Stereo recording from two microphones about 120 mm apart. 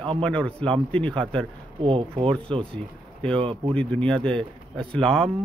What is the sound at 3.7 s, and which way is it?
A man's voice, 10° left (ahead or behind).